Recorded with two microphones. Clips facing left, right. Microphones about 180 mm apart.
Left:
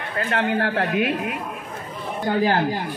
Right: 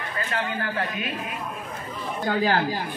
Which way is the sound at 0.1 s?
60° left (ahead or behind).